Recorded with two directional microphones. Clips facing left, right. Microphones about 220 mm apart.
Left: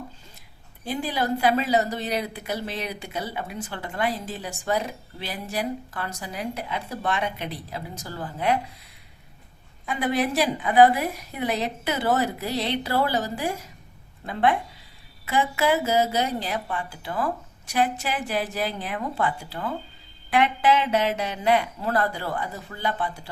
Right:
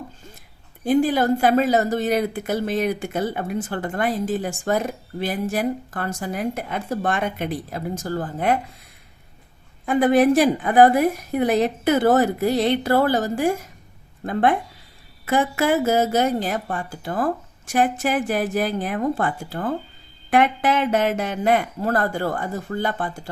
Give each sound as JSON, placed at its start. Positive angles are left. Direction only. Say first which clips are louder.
{"t": 0.9, "sound": "a woman's voice", "louder": "right 9 dB", "side_deg": -50}
{"t": 9.8, "sound": "a woman's voice", "louder": "right 9 dB", "side_deg": -50}
{"t": 15.3, "sound": "a woman's voice", "louder": "right 3 dB", "side_deg": -50}